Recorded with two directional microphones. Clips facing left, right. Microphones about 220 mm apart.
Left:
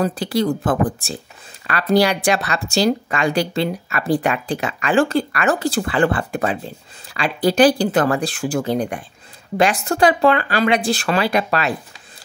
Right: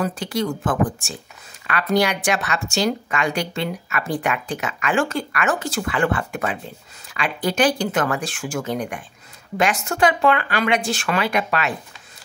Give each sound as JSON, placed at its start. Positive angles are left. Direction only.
{"t": 0.0, "sound": "a woman's voice", "side_deg": 35}